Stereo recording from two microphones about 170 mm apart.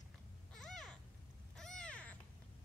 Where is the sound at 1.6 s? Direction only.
5° left (ahead or behind).